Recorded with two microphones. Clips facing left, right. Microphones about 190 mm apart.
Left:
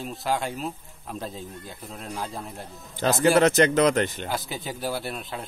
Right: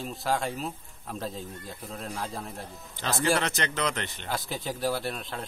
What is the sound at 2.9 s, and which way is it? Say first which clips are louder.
Speech: left 7 dB; 45° left (ahead or behind).